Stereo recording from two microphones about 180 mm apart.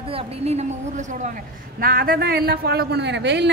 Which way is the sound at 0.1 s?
35° right (ahead or behind).